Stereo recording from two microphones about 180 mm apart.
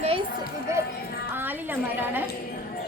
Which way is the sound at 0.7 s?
15° right (ahead or behind).